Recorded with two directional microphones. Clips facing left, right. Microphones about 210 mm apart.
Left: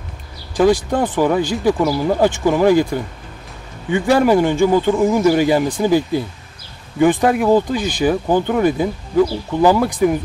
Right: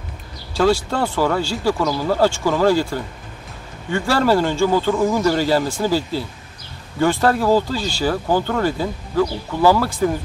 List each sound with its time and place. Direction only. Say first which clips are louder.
0.6 s speech: left 3 dB; 15° left (ahead or behind)